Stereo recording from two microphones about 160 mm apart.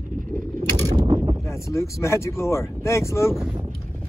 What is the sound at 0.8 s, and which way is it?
Pulleys, 30° right (ahead or behind).